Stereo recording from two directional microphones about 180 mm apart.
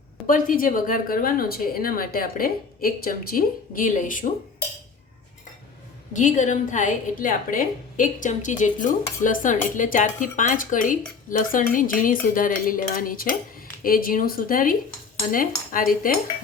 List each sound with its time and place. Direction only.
0.3 s speech: 50° left (ahead or behind)
6.1 s speech: 45° left (ahead or behind)